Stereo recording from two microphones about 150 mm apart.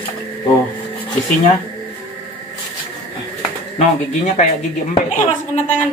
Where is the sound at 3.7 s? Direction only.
50° left (ahead or behind).